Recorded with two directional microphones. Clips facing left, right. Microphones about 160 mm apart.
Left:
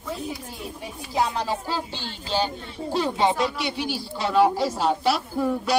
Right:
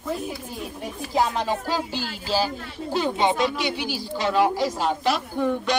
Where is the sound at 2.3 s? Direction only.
5° right (ahead or behind).